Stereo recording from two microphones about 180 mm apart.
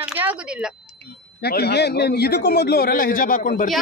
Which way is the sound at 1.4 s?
65° left (ahead or behind).